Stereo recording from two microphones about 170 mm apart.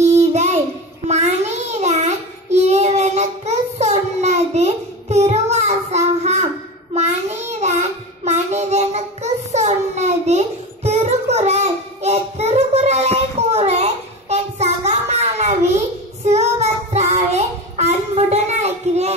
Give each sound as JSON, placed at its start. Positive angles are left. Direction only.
{"t": 0.0, "sound": "child singing", "side_deg": -40}